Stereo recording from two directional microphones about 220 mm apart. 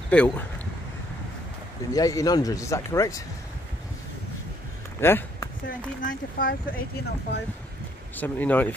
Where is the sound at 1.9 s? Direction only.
15° left (ahead or behind).